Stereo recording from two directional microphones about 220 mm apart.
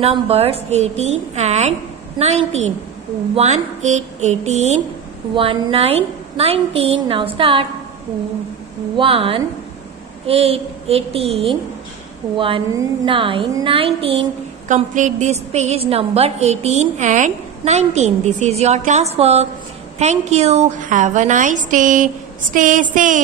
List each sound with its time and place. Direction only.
0.0 s a woman's voice: 25° right (ahead or behind)
8.9 s a woman's voice: 25° right (ahead or behind)